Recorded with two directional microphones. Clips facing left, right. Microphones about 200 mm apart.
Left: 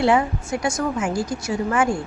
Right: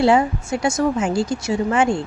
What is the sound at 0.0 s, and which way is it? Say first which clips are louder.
A woman's voice: right 3 dB; 25° right (ahead or behind).